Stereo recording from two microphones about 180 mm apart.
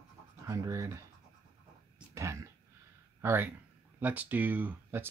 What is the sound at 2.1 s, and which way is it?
Speech, 15° right (ahead or behind).